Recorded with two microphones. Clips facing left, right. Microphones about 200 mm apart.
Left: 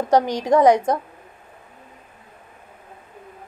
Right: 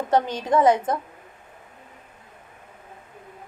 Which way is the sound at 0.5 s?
40° left (ahead or behind).